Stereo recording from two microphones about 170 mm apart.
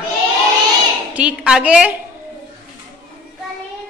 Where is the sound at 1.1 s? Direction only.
5° right (ahead or behind).